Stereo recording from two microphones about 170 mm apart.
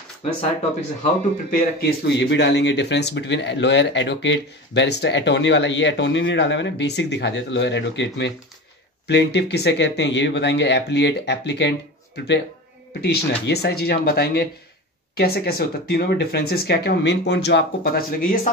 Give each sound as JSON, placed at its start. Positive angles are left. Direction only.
{"t": 1.5, "sound": "speech", "side_deg": 80}
{"t": 13.0, "sound": "speech", "side_deg": 75}